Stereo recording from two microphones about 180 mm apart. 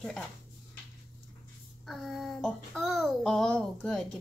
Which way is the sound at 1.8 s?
Centre (ahead or behind).